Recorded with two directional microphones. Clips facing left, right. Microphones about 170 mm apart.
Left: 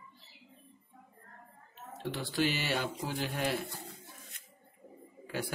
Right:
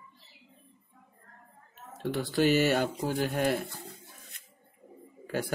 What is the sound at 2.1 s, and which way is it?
A man's voice, 45° right (ahead or behind).